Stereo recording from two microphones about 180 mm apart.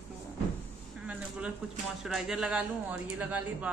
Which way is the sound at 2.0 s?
5° right (ahead or behind).